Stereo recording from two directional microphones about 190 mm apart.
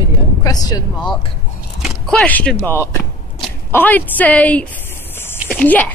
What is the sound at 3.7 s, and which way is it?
A woman's voice, 10° left (ahead or behind).